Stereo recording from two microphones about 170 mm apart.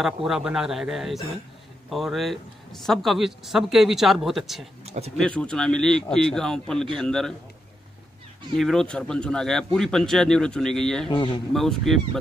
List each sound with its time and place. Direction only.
0.0 s a man's voice: centre (ahead or behind)
4.8 s a sound: 40° right (ahead or behind)
5.1 s a man's voice: 5° left (ahead or behind)
8.5 s a man's voice: centre (ahead or behind)
11.1 s a man's voice: 30° left (ahead or behind)
11.5 s a man's voice: centre (ahead or behind)